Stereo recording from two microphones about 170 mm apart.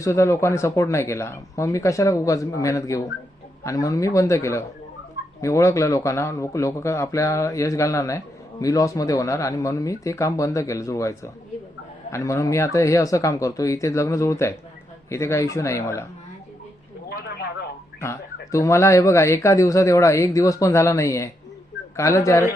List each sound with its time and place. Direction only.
0.0 s speech: 15° left (ahead or behind)
17.1 s a sound: 70° left (ahead or behind)
18.0 s speech: 15° left (ahead or behind)